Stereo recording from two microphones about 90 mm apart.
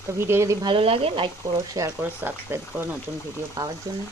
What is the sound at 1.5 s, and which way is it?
Speech, 40° right (ahead or behind).